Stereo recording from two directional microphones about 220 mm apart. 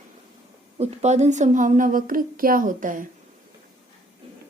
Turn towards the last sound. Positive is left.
turn(degrees=-40)  # may be behind; listen again after turning